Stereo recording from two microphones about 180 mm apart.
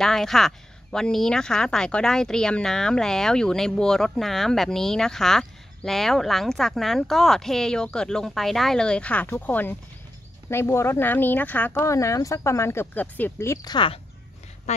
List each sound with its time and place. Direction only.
0.0 s speech: centre (ahead or behind); by 13.9 s 25° left (ahead or behind)
14.7 s a woman's voice: 40° left (ahead or behind)